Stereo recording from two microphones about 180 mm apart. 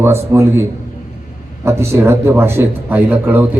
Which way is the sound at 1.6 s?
15° right (ahead or behind).